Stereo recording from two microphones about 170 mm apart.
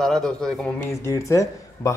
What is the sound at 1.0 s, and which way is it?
Speech, 15° left (ahead or behind).